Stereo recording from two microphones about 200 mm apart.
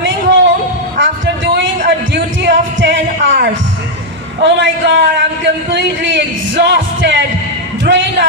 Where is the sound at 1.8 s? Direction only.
60° right (ahead or behind).